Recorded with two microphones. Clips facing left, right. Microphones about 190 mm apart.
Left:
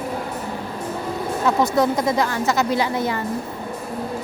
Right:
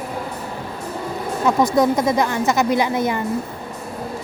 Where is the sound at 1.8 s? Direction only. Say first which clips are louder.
Right 2 dB; 20° right (ahead or behind).